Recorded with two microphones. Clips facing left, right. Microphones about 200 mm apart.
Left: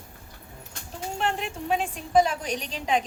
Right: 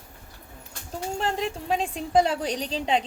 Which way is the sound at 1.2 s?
35° right (ahead or behind).